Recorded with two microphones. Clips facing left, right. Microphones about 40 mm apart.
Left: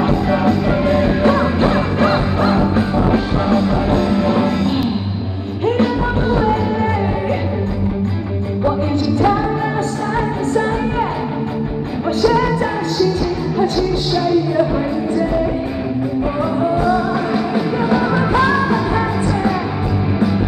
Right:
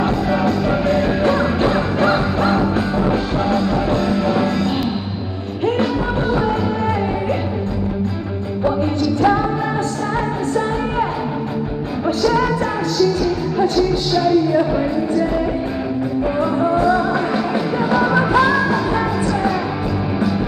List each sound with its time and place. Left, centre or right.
0.0 s music: centre
8.6 s music: centre
12.2 s music: centre
13.6 s music: centre
16.3 s music: centre